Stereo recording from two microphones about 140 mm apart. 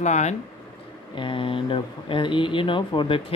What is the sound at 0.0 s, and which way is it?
Speech, 55° left (ahead or behind).